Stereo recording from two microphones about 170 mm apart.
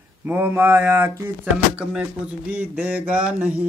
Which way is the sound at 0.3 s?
10° right (ahead or behind).